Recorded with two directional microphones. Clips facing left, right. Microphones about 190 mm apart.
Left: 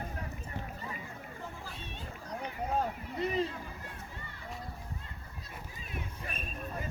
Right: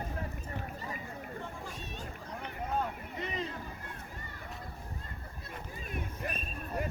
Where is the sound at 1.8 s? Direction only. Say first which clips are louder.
Right 2 dB; 40° right (ahead or behind).